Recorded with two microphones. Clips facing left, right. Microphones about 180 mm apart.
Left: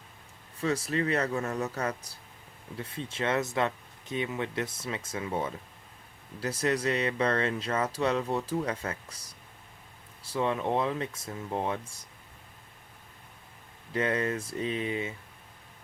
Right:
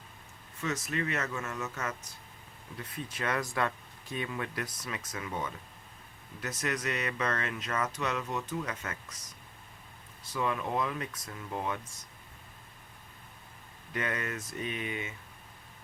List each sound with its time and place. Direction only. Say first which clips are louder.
0.6 s speech: left 5 dB; 30° left (ahead or behind)
13.9 s speech: left 6 dB; 30° left (ahead or behind)